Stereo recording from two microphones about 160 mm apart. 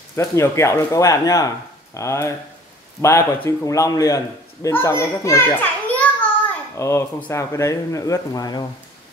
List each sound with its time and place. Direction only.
0.1 s a child's voice: 15° left (ahead or behind)